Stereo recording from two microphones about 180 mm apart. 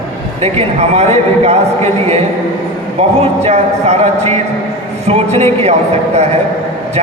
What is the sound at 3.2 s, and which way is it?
A man's voice, 35° right (ahead or behind).